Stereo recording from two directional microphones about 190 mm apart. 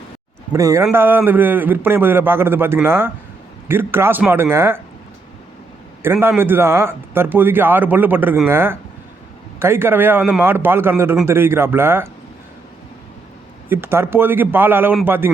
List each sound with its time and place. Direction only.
0.5 s speech: 15° right (ahead or behind)
6.0 s speech: 10° right (ahead or behind)
13.7 s speech: 10° right (ahead or behind)